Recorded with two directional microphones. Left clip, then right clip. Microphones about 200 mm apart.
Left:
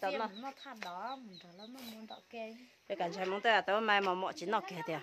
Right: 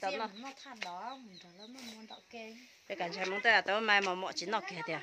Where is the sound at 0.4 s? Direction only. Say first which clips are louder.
Even; 50° left (ahead or behind).